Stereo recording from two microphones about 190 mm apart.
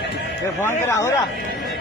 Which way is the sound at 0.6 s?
15° left (ahead or behind).